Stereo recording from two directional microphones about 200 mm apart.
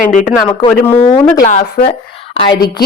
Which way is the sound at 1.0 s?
25° left (ahead or behind).